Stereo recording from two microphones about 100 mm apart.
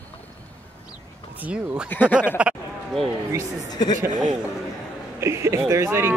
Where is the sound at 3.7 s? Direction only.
40° left (ahead or behind).